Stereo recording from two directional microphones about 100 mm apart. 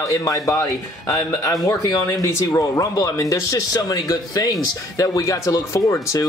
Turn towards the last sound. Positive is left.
turn(degrees=35)  # may be behind; listen again after turning